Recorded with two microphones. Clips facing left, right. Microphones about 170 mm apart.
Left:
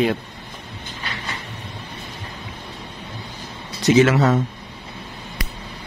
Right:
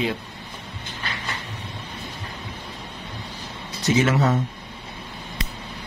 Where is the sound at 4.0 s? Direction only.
85° left.